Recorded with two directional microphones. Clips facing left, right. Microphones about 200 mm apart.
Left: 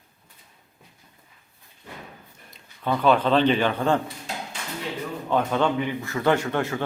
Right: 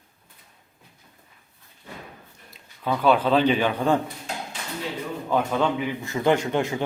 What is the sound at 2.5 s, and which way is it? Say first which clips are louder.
Speech: left 1 dB; 5° right (ahead or behind).